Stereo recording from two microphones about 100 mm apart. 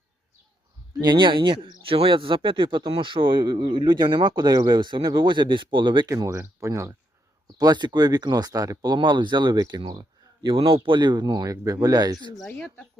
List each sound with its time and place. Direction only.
1.0 s speech: 50° right (ahead or behind)
1.9 s speech: 65° right (ahead or behind)
6.1 s speech: 30° right (ahead or behind)
7.6 s speech: 45° right (ahead or behind)
9.0 s speech: 50° right (ahead or behind)